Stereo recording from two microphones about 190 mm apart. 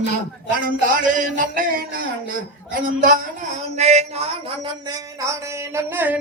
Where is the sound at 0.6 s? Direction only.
45° right (ahead or behind).